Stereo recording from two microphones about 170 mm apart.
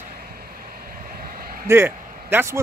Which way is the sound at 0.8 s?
55° right (ahead or behind).